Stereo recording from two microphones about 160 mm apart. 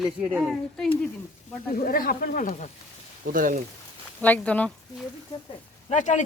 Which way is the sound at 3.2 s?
60° right (ahead or behind).